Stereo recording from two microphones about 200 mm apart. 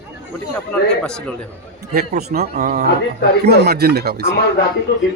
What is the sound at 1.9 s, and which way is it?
Speech, 50° right (ahead or behind).